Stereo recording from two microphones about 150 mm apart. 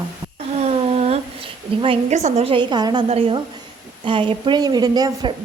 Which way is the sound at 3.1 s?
40° right (ahead or behind).